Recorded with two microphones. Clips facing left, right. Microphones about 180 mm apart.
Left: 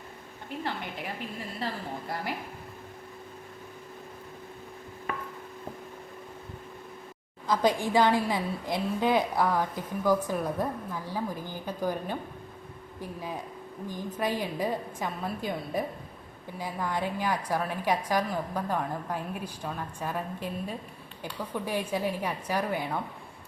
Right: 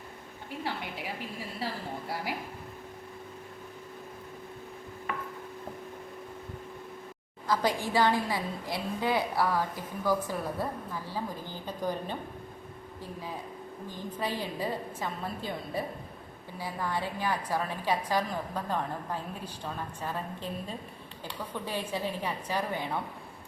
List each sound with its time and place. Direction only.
0.6 s a woman's voice: 5° right (ahead or behind)
7.4 s a woman's voice: 20° left (ahead or behind)
13.8 s a woman's voice: 15° left (ahead or behind)